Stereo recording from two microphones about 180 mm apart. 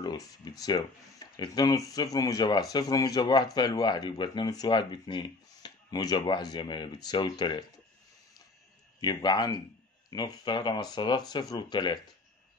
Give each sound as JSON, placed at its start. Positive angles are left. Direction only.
{"t": 0.0, "sound": "speech", "side_deg": 20}
{"t": 9.0, "sound": "speech", "side_deg": 25}